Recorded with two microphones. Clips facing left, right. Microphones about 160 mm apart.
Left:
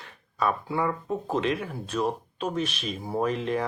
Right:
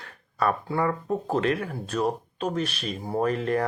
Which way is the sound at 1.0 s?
40° right (ahead or behind).